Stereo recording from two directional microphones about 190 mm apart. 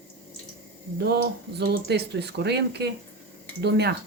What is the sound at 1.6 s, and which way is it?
Speech, 60° right (ahead or behind).